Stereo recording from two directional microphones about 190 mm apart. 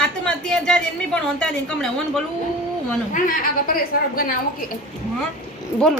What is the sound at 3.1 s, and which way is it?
A woman's voice, 50° left (ahead or behind).